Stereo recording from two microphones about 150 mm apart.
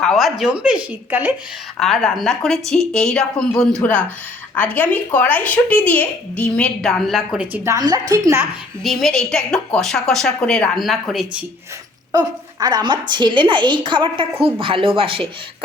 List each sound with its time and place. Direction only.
0.0 s a woman's voice: centre (ahead or behind)
1.8 s a woman's voice: centre (ahead or behind)
7.5 s a woman's voice: 20° right (ahead or behind)
8.8 s a woman's voice: centre (ahead or behind)
12.1 s a woman's voice: 25° right (ahead or behind)